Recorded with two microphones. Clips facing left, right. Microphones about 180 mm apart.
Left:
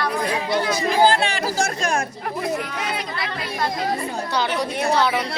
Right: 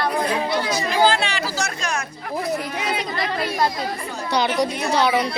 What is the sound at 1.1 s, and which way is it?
Speech, 50° left (ahead or behind).